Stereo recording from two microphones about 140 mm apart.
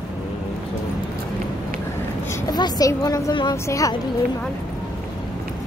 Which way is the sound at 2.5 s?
30° left (ahead or behind).